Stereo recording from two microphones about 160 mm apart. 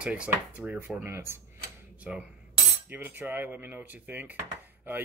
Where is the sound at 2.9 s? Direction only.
10° right (ahead or behind).